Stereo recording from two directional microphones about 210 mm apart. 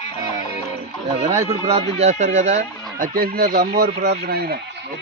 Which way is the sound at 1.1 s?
30° right (ahead or behind).